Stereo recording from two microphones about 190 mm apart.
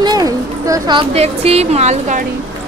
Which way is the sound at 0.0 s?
20° right (ahead or behind).